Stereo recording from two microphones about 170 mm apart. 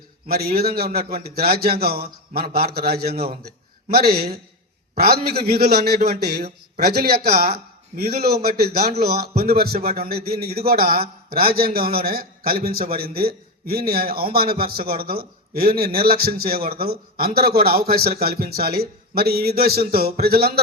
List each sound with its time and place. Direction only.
0.3 s a man's voice: 65° right (ahead or behind)